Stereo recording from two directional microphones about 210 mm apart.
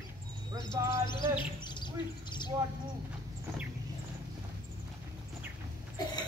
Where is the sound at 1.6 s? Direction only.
20° left (ahead or behind).